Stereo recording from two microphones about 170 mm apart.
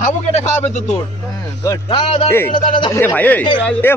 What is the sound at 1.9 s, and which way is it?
Speech, 25° left (ahead or behind).